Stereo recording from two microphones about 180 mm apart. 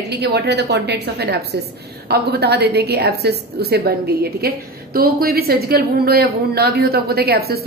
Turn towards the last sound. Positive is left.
turn(degrees=-60)  # may be behind; listen again after turning